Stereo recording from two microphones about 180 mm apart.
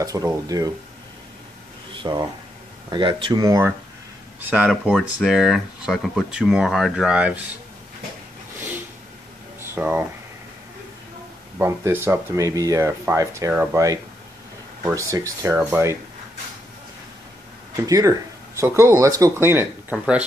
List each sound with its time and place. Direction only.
0.0 s speech: 20° right (ahead or behind)
2.0 s a sound: 25° right (ahead or behind)
2.9 s speech: 25° right (ahead or behind)
4.5 s speech: 5° right (ahead or behind)
8.5 s vehicle: 10° right (ahead or behind)
9.8 s speech: 10° right (ahead or behind)
11.5 s speech: 10° right (ahead or behind)
17.7 s speech: 20° right (ahead or behind)